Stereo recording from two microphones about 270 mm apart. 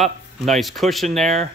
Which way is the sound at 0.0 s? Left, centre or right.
Centre.